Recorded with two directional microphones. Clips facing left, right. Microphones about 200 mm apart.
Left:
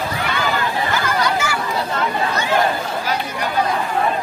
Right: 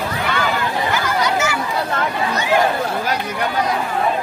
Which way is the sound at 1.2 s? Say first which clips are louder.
Right 1 dB; 20° right (ahead or behind).